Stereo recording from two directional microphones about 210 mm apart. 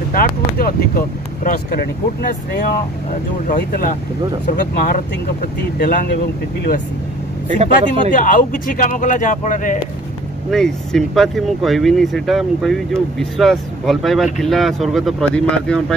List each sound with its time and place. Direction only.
0.1 s speech: 45° left (ahead or behind)
3.4 s speech: 40° left (ahead or behind)
7.5 s speech: 25° right (ahead or behind)
8.1 s speech: 40° left (ahead or behind)
10.5 s speech: centre (ahead or behind)